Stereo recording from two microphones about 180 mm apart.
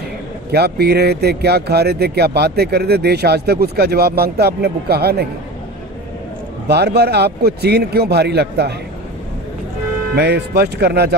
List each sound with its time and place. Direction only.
0.5 s speech: 60° right (ahead or behind)
6.7 s speech: 65° right (ahead or behind)
10.1 s speech: 65° right (ahead or behind)